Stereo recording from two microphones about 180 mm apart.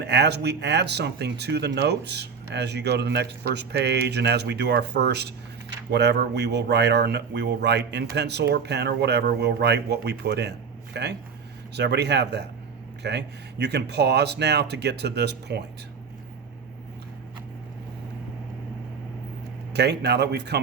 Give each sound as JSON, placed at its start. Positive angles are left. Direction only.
{"t": 0.0, "sound": "speech", "side_deg": -65}
{"t": 19.7, "sound": "speech", "side_deg": -65}